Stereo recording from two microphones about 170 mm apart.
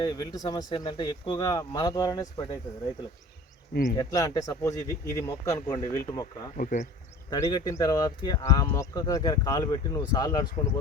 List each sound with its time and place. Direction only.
0.0 s speech: 25° left (ahead or behind)
3.9 s speech: 20° left (ahead or behind)
6.6 s speech: 50° left (ahead or behind)
7.3 s speech: 20° left (ahead or behind)